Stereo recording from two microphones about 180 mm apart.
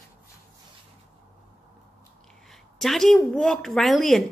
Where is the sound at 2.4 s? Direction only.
Centre (ahead or behind).